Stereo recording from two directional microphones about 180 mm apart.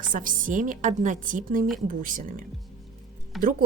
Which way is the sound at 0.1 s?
50° right (ahead or behind).